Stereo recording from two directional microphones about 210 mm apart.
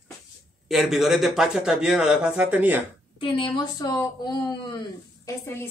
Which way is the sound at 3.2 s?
25° left (ahead or behind).